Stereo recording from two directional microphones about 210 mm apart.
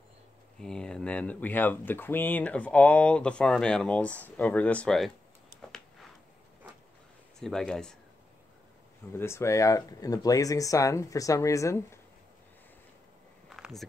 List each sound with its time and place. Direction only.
0.6 s speech: 5° left (ahead or behind)
7.3 s speech: centre (ahead or behind)
9.1 s speech: 10° left (ahead or behind)
13.5 s a sound: centre (ahead or behind)